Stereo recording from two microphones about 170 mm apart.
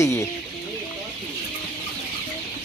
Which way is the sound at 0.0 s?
20° left (ahead or behind).